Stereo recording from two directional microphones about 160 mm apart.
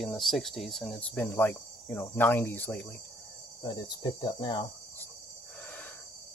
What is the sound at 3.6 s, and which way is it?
Cricket, 25° left (ahead or behind).